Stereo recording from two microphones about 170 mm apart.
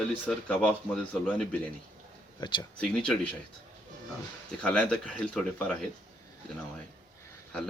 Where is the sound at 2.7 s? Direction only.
5° left (ahead or behind).